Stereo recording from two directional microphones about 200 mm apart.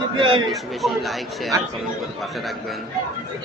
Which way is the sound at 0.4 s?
Centre (ahead or behind).